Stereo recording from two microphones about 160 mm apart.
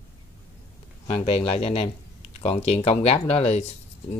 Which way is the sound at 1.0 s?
40° left (ahead or behind).